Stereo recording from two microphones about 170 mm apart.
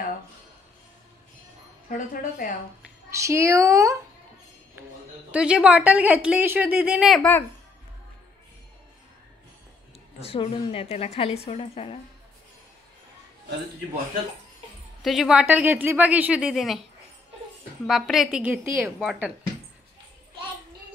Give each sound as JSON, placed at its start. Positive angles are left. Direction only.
{"t": 2.0, "sound": "speech", "side_deg": 50}
{"t": 3.1, "sound": "speech", "side_deg": -15}
{"t": 5.3, "sound": "speech", "side_deg": -5}
{"t": 10.2, "sound": "a woman's voice", "side_deg": 35}
{"t": 15.0, "sound": "speech", "side_deg": 0}
{"t": 17.8, "sound": "a woman's voice", "side_deg": 0}